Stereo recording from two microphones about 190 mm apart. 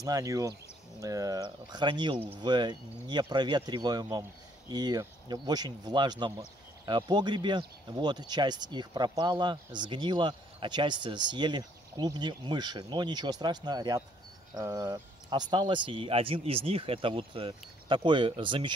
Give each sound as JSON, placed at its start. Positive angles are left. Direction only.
{"t": 0.0, "sound": "speech", "side_deg": -20}